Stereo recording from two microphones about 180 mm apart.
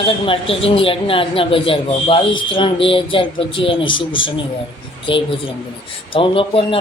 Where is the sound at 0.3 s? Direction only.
30° left (ahead or behind).